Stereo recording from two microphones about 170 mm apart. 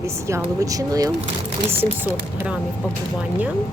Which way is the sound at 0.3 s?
20° right (ahead or behind).